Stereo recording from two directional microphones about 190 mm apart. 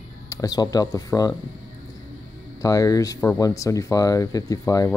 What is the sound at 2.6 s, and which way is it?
Speech, 20° left (ahead or behind).